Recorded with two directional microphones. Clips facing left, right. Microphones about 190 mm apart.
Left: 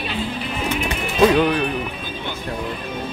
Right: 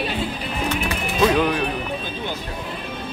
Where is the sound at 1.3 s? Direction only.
Centre (ahead or behind).